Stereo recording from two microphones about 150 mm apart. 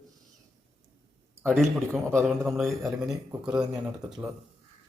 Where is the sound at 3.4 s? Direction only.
5° right (ahead or behind).